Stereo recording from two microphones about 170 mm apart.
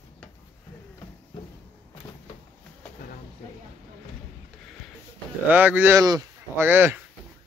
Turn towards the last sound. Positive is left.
turn(degrees=-10)  # may be behind; listen again after turning